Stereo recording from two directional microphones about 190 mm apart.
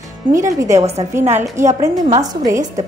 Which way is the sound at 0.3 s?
15° right (ahead or behind).